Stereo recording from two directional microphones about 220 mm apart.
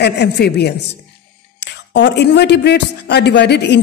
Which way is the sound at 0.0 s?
50° left (ahead or behind).